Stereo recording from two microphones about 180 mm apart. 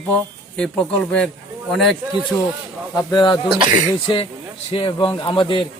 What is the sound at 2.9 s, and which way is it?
Speech, 20° left (ahead or behind).